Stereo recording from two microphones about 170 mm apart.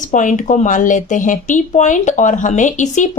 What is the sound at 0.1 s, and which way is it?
Speech, 50° left (ahead or behind).